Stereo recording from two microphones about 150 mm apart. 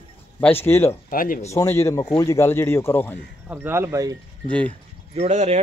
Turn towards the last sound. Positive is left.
turn(degrees=-45)  # may be behind; listen again after turning